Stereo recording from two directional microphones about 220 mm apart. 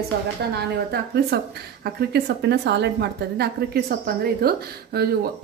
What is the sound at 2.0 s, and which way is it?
A woman's voice, 45° right (ahead or behind).